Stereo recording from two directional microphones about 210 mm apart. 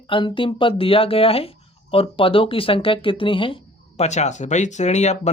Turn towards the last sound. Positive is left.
turn(degrees=30)  # may be behind; listen again after turning